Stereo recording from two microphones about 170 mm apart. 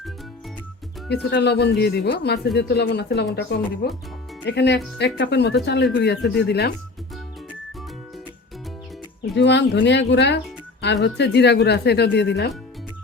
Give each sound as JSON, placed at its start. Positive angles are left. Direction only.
{"t": 1.1, "sound": "speech", "side_deg": 80}
{"t": 4.4, "sound": "speech", "side_deg": 90}
{"t": 9.2, "sound": "speech", "side_deg": 90}